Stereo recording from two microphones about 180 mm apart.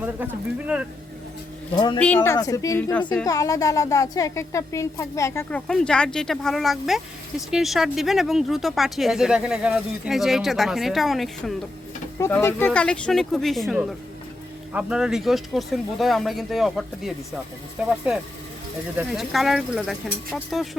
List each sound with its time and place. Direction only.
0.7 s speech: 10° right (ahead or behind)
1.7 s speech: 25° left (ahead or behind)
2.0 s a woman's voice: 10° left (ahead or behind)
12.2 s a woman's voice: 15° left (ahead or behind); by 17.9 s 5° right (ahead or behind)
18.9 s a woman's voice: centre (ahead or behind)